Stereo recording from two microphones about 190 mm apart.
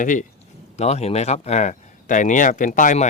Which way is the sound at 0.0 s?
40° left (ahead or behind).